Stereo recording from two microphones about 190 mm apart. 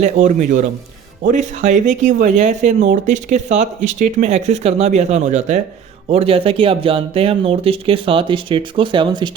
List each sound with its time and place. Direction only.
0.0 s speech: 40° right (ahead or behind); by 9.3 s 25° right (ahead or behind)